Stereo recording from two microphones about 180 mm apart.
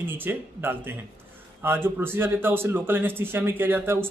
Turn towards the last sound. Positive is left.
turn(degrees=-10)  # may be behind; listen again after turning